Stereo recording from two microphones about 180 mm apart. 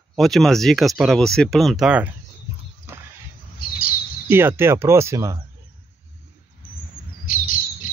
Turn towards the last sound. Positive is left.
turn(degrees=50)  # may be behind; listen again after turning